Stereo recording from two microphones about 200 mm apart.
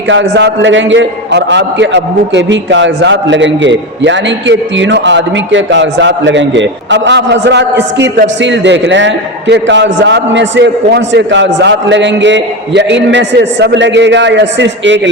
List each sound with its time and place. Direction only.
0.1 s a man's voice: 65° right (ahead or behind)